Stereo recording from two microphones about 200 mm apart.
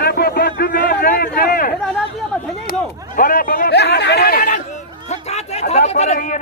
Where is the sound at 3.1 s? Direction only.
45° left (ahead or behind).